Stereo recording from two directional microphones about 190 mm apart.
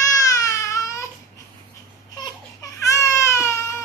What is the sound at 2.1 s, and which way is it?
Baby cry, 20° left (ahead or behind).